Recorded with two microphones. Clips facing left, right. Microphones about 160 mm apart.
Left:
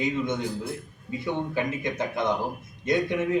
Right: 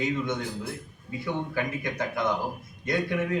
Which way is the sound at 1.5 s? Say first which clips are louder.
Left 2 dB; 20° left (ahead or behind).